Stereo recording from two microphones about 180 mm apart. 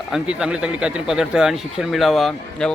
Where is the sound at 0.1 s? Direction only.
5° right (ahead or behind).